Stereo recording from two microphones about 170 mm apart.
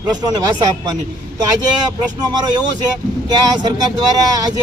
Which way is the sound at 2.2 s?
25° right (ahead or behind).